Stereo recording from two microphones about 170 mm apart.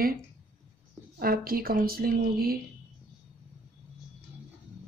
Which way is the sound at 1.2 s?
60° right (ahead or behind).